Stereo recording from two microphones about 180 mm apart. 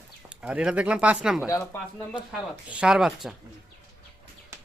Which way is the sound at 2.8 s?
5° right (ahead or behind).